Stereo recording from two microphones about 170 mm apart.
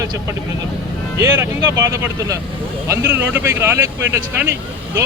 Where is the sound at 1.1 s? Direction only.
15° right (ahead or behind).